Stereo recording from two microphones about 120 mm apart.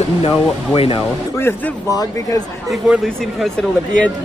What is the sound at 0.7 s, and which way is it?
Speech, 50° left (ahead or behind).